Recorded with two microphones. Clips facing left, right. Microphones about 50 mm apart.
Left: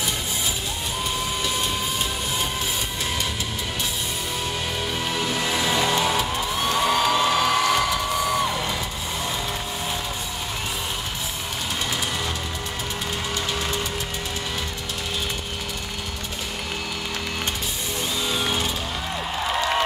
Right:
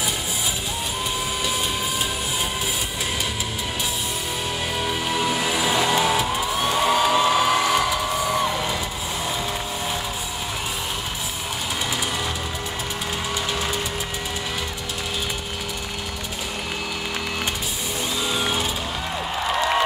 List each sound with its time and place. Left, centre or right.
4.7 s music: centre
13.5 s vehicle: centre
18.2 s music: centre